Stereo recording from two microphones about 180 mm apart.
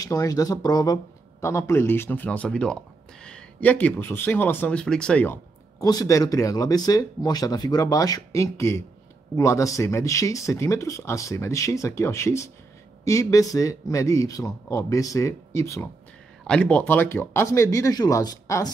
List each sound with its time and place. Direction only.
0.0 s speech: 20° left (ahead or behind)